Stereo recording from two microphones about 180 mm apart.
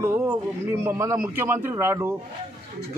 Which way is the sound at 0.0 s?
15° right (ahead or behind).